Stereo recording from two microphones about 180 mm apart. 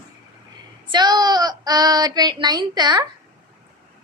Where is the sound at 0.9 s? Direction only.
25° right (ahead or behind).